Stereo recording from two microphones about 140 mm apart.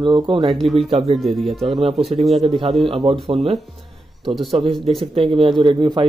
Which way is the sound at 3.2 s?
45° right (ahead or behind).